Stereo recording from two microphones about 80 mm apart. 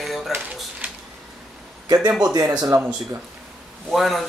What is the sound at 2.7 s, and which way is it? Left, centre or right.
Speech, right.